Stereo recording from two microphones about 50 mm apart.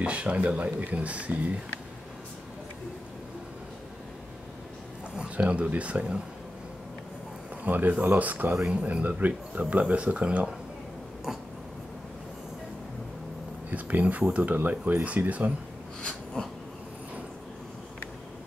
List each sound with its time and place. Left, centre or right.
0.0 s speech: right
5.3 s speech: right
7.6 s speech: right
13.7 s speech: right
16.0 s a sound: left